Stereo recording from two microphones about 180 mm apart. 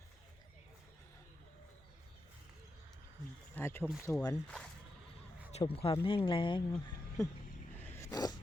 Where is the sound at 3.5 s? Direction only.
15° left (ahead or behind).